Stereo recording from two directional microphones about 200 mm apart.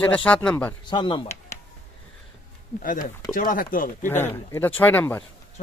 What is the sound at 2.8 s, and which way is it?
Speech, 45° left (ahead or behind).